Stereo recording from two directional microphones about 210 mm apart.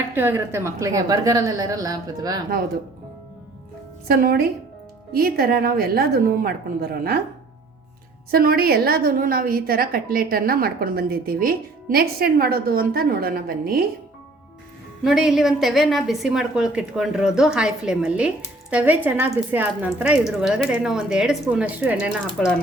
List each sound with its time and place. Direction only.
0.1 s a woman's voice: 10° right (ahead or behind)
4.1 s a woman's voice: 45° right (ahead or behind)
8.3 s a woman's voice: 45° right (ahead or behind)
15.0 s speech: centre (ahead or behind)